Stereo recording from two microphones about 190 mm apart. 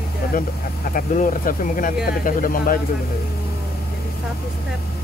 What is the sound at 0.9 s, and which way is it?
Speech, 45° left (ahead or behind).